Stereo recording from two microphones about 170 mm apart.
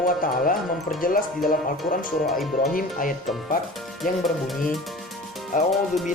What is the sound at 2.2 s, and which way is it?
Speech, centre (ahead or behind).